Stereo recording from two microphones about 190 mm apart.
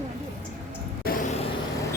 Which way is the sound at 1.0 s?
50° left (ahead or behind).